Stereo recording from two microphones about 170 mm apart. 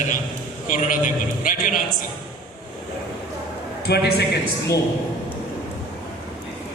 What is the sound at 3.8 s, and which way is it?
Speech, 70° left (ahead or behind).